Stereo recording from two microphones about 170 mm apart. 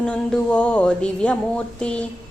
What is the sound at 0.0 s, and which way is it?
A woman's voice, 5° left (ahead or behind).